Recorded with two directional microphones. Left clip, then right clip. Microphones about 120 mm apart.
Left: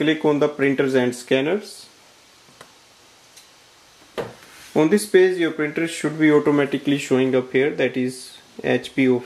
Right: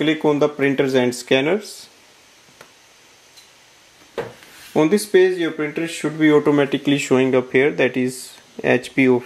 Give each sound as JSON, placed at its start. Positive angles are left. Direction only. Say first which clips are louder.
{"t": 0.2, "sound": "speech", "louder": "right 1 dB", "side_deg": -20}
{"t": 4.7, "sound": "speech", "louder": "right 1 dB", "side_deg": -10}
{"t": 6.4, "sound": "speech", "louder": "right 2 dB", "side_deg": -30}